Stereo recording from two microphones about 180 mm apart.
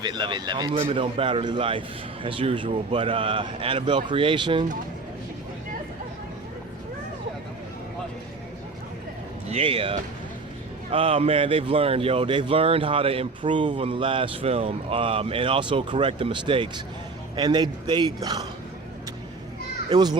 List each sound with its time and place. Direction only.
0.0 s speech: 25° right (ahead or behind)
9.5 s speech: 30° right (ahead or behind)
10.9 s speech: 30° right (ahead or behind)
19.9 s speech: 20° right (ahead or behind)